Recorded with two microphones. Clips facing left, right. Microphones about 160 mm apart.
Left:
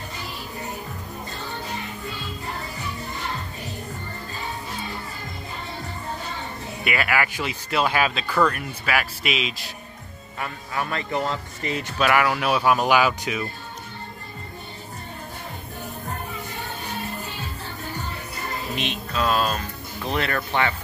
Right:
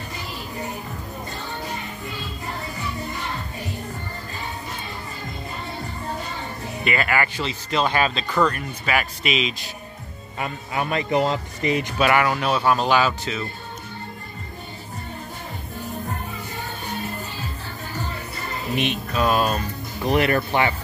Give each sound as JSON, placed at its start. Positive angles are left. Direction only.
{"t": 6.8, "sound": "speech", "side_deg": 5}
{"t": 10.4, "sound": "speech", "side_deg": -20}
{"t": 12.0, "sound": "speech", "side_deg": 0}
{"t": 19.1, "sound": "speech", "side_deg": -10}